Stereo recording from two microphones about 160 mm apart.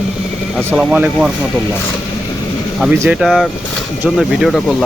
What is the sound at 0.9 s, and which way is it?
Speech, 10° right (ahead or behind).